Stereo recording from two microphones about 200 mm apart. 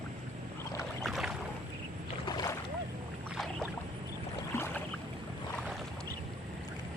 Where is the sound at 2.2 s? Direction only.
20° left (ahead or behind).